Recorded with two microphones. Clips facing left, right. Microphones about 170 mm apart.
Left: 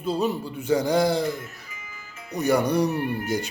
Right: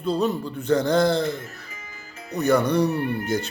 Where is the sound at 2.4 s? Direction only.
10° left (ahead or behind).